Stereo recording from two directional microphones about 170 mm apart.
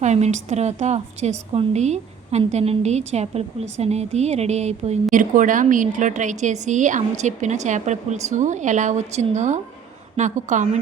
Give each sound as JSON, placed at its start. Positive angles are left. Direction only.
{"t": 0.0, "sound": "a woman's voice", "side_deg": -45}